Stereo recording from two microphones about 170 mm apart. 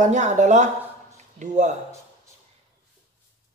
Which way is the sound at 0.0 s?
45° right (ahead or behind).